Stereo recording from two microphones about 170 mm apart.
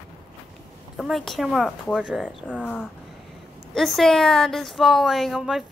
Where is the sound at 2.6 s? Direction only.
5° left (ahead or behind).